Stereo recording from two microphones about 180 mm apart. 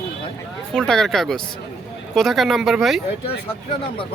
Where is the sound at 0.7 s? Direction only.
5° left (ahead or behind).